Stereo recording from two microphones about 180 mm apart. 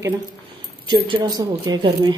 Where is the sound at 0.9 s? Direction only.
30° right (ahead or behind).